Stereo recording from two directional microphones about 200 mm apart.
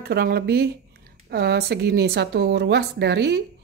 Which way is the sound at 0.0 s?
50° right (ahead or behind).